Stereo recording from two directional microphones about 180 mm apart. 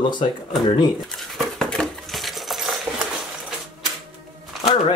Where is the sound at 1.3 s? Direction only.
Centre (ahead or behind).